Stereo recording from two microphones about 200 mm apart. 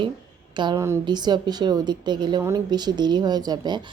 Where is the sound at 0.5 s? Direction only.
20° right (ahead or behind).